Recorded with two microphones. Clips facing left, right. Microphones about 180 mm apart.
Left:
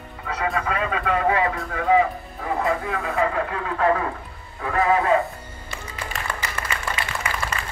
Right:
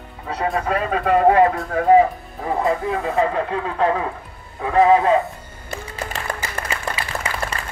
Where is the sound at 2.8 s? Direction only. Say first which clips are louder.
Right 4 dB; 25° right (ahead or behind).